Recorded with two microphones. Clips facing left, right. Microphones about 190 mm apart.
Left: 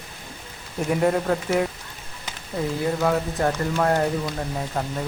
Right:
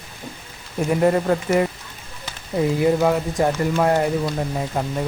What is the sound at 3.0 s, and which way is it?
Speech, 15° right (ahead or behind).